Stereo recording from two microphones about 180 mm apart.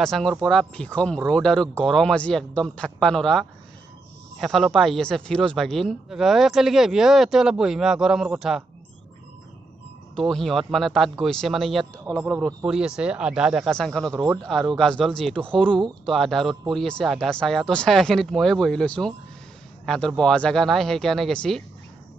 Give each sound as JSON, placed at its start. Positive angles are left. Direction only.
{"t": 0.0, "sound": "speech", "side_deg": 5}
{"t": 10.1, "sound": "speech", "side_deg": 0}
{"t": 14.1, "sound": "speech", "side_deg": -15}
{"t": 14.4, "sound": "speech", "side_deg": 0}